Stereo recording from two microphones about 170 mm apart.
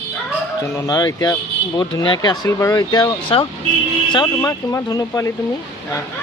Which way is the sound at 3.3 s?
30° left (ahead or behind).